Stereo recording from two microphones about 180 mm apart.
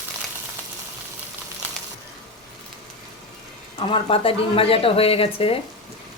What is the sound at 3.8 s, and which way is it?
Speech, 30° left (ahead or behind).